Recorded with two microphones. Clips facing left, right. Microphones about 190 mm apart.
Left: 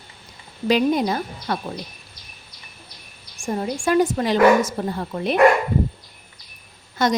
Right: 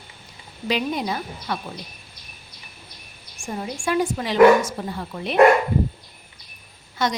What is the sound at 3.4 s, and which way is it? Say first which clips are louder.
A woman's voice: left 4 dB; 45° left (ahead or behind).